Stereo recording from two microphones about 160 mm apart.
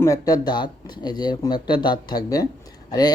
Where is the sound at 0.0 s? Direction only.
20° left (ahead or behind).